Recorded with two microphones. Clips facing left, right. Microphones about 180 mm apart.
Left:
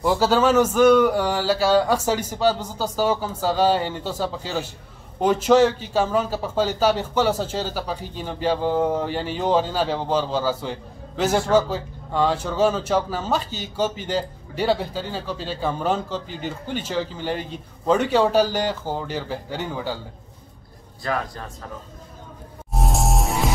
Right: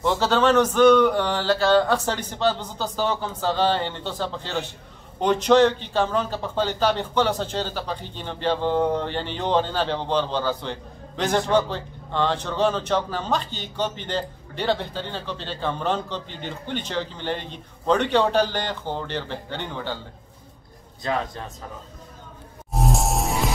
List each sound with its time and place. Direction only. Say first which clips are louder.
0.0 s a man's voice: left 2 dB; 5° left (ahead or behind)
21.0 s speech: even; 20° right (ahead or behind)
22.8 s music: even; centre (ahead or behind)